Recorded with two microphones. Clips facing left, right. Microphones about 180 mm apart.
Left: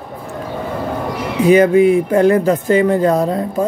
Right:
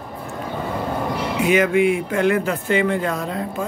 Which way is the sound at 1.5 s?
35° left (ahead or behind).